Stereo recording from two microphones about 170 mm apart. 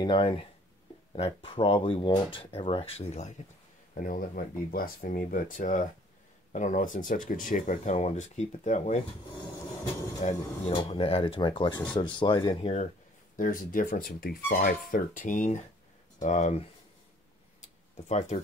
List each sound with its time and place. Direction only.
0.0 s speech: 30° left (ahead or behind)
3.9 s speech: 55° left (ahead or behind)
10.2 s speech: 40° left (ahead or behind)
13.4 s speech: 55° left (ahead or behind)
18.0 s speech: 40° left (ahead or behind)